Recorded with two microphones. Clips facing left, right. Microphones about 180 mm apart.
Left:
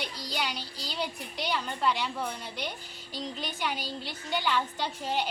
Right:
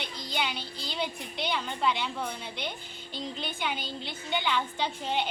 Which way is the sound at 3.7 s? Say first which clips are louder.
Left 1 dB; 10° left (ahead or behind).